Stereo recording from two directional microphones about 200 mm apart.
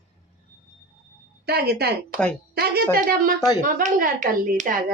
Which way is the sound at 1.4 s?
55° right (ahead or behind).